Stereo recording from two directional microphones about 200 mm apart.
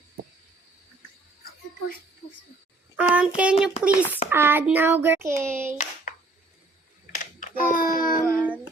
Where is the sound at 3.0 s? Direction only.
5° right (ahead or behind).